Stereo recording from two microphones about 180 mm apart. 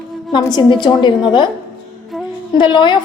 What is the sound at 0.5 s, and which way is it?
Speech, 25° left (ahead or behind).